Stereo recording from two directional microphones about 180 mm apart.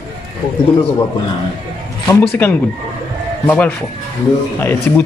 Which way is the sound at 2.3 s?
10° left (ahead or behind).